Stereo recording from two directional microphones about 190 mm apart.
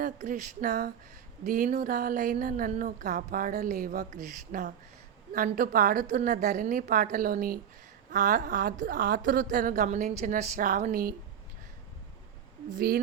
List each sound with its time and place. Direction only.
0.0 s a woman's voice: 40° right (ahead or behind)
1.5 s a woman's voice: 40° right (ahead or behind)